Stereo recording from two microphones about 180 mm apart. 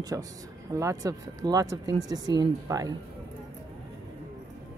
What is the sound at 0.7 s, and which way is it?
Speech, 20° right (ahead or behind).